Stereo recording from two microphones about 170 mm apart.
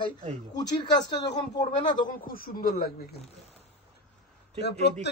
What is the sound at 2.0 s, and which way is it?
Speech, 55° left (ahead or behind).